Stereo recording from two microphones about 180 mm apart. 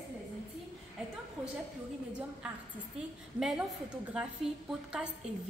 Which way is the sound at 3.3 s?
5° right (ahead or behind).